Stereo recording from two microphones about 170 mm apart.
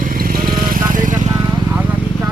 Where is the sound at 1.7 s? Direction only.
10° right (ahead or behind).